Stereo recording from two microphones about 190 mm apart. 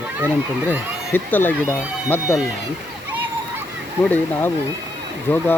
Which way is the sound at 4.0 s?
10° left (ahead or behind).